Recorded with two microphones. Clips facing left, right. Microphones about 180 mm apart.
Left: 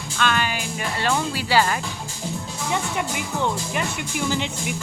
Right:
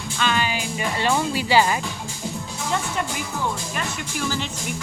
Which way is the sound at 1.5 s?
15° right (ahead or behind).